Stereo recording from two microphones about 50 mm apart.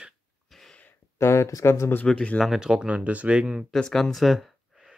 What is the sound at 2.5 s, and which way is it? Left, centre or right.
Speech, centre.